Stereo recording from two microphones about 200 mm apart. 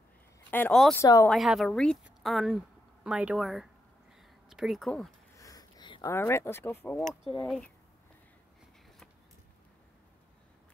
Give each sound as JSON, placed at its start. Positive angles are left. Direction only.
{"t": 0.5, "sound": "speech", "side_deg": 10}
{"t": 1.0, "sound": "speech", "side_deg": 15}
{"t": 1.3, "sound": "a woman's voice", "side_deg": 0}
{"t": 4.2, "sound": "a sound", "side_deg": 0}
{"t": 5.4, "sound": "speech", "side_deg": 20}